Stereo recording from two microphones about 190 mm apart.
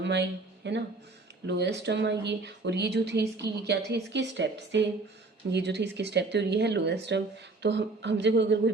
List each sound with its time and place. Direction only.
0.0 s speech: 65° right (ahead or behind)